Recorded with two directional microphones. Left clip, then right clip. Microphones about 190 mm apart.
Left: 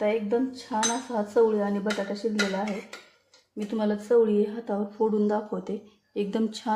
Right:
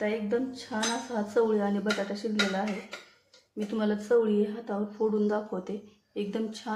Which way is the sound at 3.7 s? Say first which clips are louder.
Left 3 dB; 20° left (ahead or behind).